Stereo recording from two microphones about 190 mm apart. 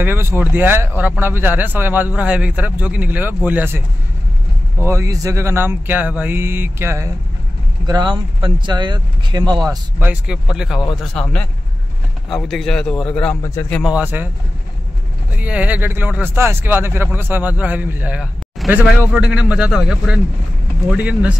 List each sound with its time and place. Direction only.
0.0 s speech: 10° right (ahead or behind)
4.8 s speech: 15° right (ahead or behind)
9.7 s a man's voice: 10° right (ahead or behind); by 13.8 s 10° left (ahead or behind)
13.8 s speech: 10° right (ahead or behind)
15.3 s speech: 5° right (ahead or behind)